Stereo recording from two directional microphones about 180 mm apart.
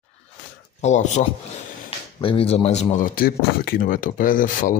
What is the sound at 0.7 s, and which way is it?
Speech, 40° left (ahead or behind).